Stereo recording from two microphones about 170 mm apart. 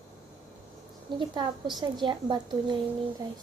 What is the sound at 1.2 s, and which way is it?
A woman's voice, 25° right (ahead or behind).